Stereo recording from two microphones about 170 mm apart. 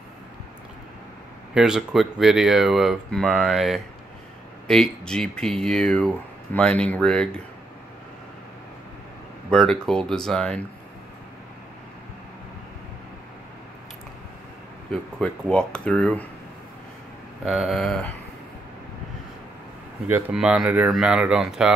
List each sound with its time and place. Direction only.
1.5 s speech: 5° right (ahead or behind)
9.5 s speech: 5° left (ahead or behind)
14.9 s speech: 5° left (ahead or behind)
17.5 s speech: centre (ahead or behind)
20.1 s speech: 10° right (ahead or behind)